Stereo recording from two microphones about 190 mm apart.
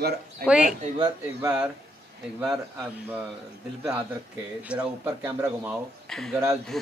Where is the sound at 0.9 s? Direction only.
20° right (ahead or behind).